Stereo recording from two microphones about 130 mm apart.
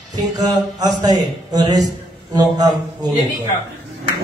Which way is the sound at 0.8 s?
30° right (ahead or behind).